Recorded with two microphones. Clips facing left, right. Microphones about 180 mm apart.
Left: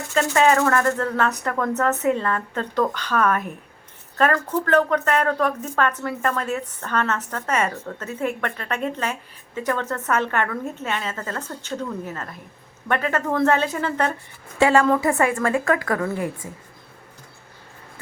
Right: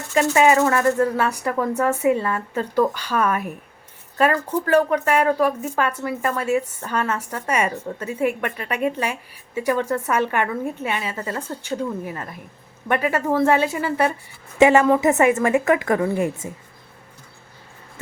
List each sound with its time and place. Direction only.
0.1 s a woman's voice: 10° right (ahead or behind)